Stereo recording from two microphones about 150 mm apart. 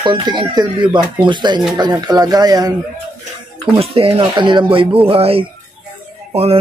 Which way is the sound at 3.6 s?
40° right (ahead or behind).